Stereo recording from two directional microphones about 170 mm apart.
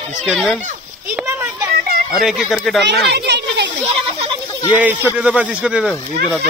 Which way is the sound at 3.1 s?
90° right.